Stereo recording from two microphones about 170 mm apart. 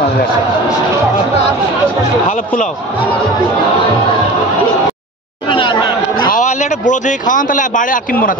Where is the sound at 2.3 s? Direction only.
45° left (ahead or behind).